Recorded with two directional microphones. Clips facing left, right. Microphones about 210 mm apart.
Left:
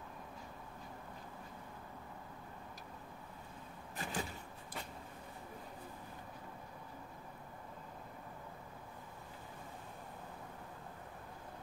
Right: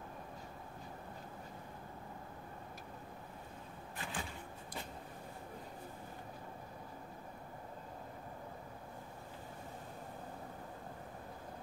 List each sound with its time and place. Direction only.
3.9 s vehicle: 40° left (ahead or behind)